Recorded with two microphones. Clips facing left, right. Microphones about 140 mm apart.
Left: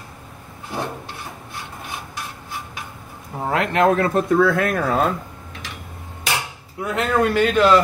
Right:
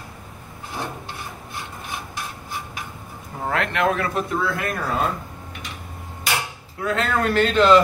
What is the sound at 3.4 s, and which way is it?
Speech, 25° left (ahead or behind).